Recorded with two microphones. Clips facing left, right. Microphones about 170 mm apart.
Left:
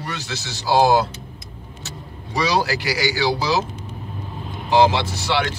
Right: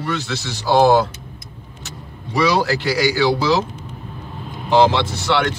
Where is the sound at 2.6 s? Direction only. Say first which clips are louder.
Right 4 dB; 15° left (ahead or behind).